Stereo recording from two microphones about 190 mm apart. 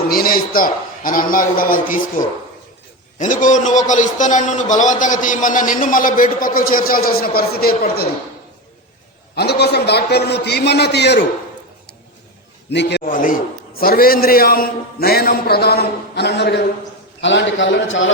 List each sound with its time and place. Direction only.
0.1 s a man's voice: 50° left (ahead or behind)
9.3 s a man's voice: 60° left (ahead or behind)
12.7 s a man's voice: 65° left (ahead or behind)
13.1 s a man's voice: 45° left (ahead or behind); by 18.1 s 85° left